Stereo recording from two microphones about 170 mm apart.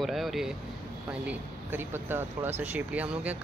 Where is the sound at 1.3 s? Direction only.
10° right (ahead or behind).